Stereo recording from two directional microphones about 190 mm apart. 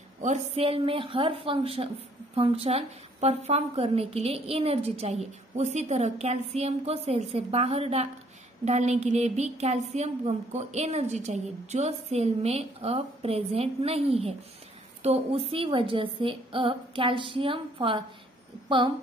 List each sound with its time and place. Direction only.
0.2 s a woman's voice: 35° right (ahead or behind)